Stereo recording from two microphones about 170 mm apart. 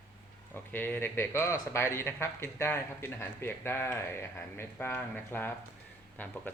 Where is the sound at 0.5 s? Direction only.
10° left (ahead or behind).